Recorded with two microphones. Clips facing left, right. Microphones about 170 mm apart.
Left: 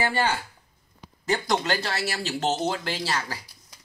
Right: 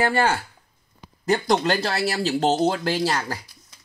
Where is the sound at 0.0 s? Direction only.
45° right (ahead or behind).